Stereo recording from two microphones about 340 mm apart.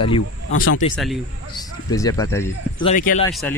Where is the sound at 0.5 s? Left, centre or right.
Left.